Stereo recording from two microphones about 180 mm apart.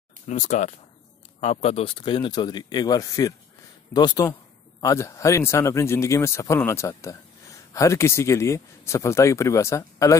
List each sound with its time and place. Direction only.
0.3 s a man's voice: 40° left (ahead or behind); by 10.1 s 15° left (ahead or behind)